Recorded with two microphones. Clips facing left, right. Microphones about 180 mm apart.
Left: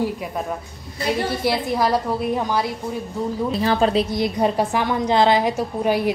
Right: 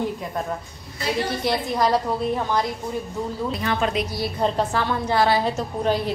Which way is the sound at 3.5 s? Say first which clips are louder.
Left 6 dB; 30° left (ahead or behind).